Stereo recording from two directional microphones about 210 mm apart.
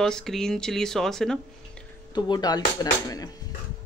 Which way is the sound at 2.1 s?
20° left (ahead or behind).